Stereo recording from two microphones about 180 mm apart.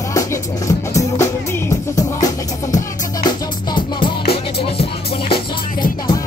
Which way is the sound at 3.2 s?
25° left (ahead or behind).